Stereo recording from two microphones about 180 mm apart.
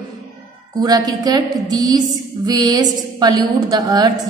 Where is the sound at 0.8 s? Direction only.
20° right (ahead or behind).